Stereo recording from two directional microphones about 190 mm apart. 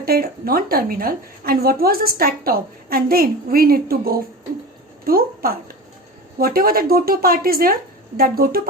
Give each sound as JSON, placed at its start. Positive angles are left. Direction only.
{"t": 0.0, "sound": "a woman's voice", "side_deg": -50}